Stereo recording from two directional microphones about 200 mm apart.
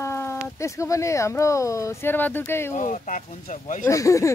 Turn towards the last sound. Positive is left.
turn(degrees=15)  # may be behind; listen again after turning